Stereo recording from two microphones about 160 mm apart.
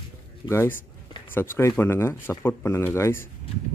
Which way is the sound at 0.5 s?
15° left (ahead or behind).